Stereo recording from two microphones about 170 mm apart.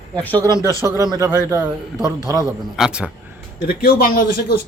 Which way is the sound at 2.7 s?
5° right (ahead or behind).